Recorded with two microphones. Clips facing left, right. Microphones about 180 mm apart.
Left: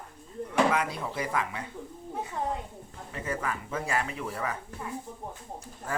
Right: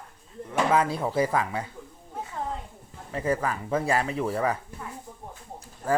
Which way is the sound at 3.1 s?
35° right (ahead or behind).